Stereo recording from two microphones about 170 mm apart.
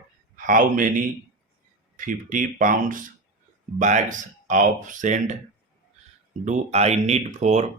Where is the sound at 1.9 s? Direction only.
50° right (ahead or behind).